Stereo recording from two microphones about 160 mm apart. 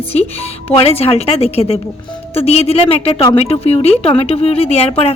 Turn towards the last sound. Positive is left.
turn(degrees=40)  # may be behind; listen again after turning